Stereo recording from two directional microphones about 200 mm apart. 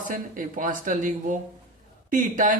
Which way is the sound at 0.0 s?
40° right (ahead or behind).